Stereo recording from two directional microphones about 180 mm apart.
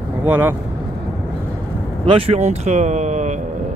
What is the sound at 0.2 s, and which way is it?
Speech, 10° right (ahead or behind).